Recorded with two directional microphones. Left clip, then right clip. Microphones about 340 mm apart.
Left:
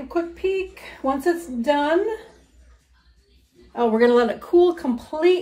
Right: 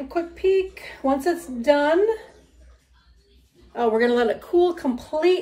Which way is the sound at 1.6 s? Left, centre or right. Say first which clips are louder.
Right 3 dB; centre.